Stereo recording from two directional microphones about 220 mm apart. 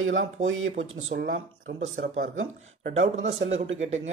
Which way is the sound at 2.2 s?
65° right (ahead or behind).